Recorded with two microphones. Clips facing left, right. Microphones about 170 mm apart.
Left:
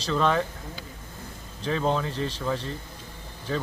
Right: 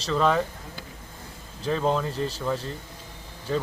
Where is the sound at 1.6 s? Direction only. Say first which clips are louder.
Right 1 dB; centre (ahead or behind).